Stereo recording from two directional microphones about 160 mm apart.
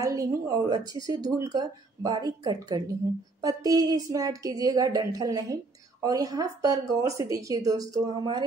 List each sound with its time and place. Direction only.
0.0 s speech: 20° right (ahead or behind)